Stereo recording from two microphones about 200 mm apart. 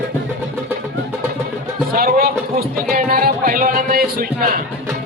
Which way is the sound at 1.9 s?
50° right (ahead or behind).